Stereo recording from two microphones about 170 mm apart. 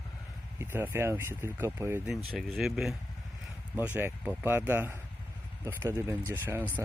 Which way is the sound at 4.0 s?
15° right (ahead or behind).